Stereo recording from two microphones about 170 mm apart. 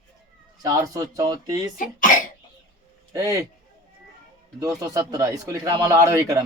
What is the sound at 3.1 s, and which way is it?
Speech, 20° right (ahead or behind).